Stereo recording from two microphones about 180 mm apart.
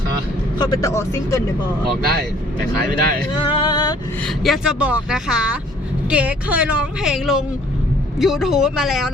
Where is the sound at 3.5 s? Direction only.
25° left (ahead or behind).